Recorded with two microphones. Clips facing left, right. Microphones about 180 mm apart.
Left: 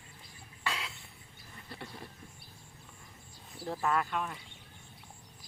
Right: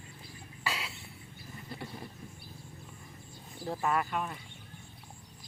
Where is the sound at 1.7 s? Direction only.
10° right (ahead or behind).